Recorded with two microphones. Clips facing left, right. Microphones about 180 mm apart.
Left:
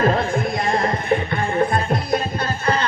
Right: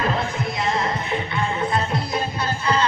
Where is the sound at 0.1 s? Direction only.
50° left (ahead or behind).